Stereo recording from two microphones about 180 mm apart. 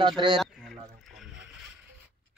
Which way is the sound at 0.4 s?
Centre (ahead or behind).